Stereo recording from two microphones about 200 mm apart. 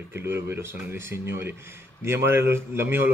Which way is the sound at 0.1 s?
10° right (ahead or behind).